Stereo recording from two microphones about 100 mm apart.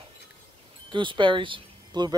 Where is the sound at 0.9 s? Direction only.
55° right (ahead or behind).